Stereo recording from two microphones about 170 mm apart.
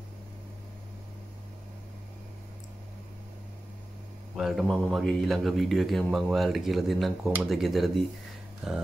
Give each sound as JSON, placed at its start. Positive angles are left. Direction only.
{"t": 4.4, "sound": "a man's voice", "side_deg": 0}